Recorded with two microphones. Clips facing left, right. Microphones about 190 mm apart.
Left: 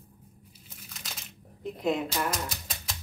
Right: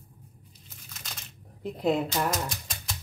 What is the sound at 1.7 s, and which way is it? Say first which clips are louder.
Speech: right 3 dB; 35° right (ahead or behind).